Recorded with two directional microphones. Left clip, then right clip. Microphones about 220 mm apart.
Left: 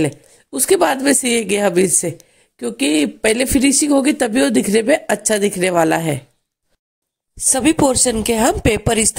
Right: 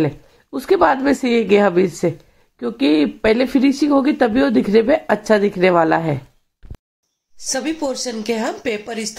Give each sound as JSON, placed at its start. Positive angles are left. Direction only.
{"t": 0.6, "sound": "speech", "side_deg": 70}
{"t": 7.4, "sound": "speech", "side_deg": 45}